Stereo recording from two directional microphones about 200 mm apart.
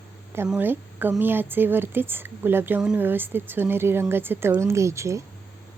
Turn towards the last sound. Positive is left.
turn(degrees=-15)  # may be behind; listen again after turning